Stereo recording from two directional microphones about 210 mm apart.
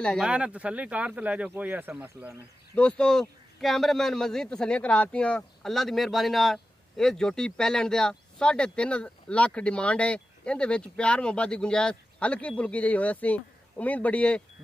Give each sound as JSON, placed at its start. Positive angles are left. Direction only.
{"t": 0.0, "sound": "speech", "side_deg": 0}
{"t": 2.7, "sound": "speech", "side_deg": 5}